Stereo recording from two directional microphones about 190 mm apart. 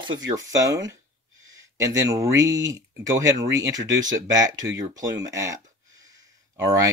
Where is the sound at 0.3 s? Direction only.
15° right (ahead or behind).